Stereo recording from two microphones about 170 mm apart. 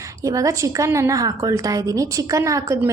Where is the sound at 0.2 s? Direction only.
20° right (ahead or behind).